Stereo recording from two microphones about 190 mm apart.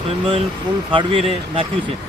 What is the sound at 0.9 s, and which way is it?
Speech, 25° right (ahead or behind).